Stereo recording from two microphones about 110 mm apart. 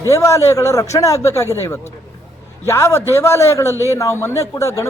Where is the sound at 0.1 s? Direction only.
25° left (ahead or behind).